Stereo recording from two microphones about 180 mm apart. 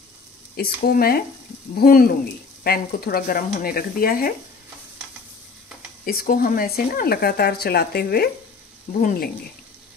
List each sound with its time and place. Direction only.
0.6 s speech: 55° left (ahead or behind)
6.0 s speech: 55° left (ahead or behind)